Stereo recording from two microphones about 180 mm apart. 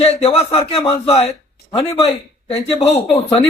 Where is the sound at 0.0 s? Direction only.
35° left (ahead or behind).